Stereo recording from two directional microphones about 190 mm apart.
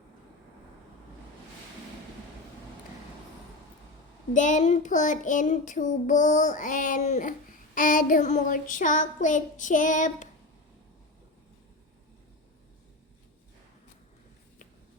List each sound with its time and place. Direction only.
4.4 s child singing: 40° left (ahead or behind)